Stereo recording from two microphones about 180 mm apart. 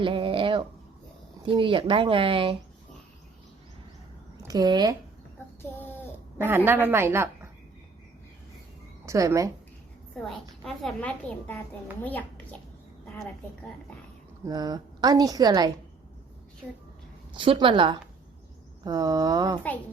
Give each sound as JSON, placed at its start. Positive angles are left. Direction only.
{"t": 0.0, "sound": "a sound", "side_deg": -30}
{"t": 1.5, "sound": "a woman's voice", "side_deg": -30}
{"t": 4.4, "sound": "a woman's voice", "side_deg": -20}
{"t": 6.7, "sound": "a woman's voice", "side_deg": -10}
{"t": 9.0, "sound": "a woman's voice", "side_deg": -15}
{"t": 10.6, "sound": "a woman's voice", "side_deg": 0}
{"t": 14.4, "sound": "a woman's voice", "side_deg": -20}
{"t": 17.3, "sound": "a woman's voice", "side_deg": -30}